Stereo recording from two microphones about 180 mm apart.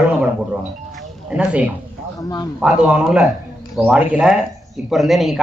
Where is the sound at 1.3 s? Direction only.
5° right (ahead or behind).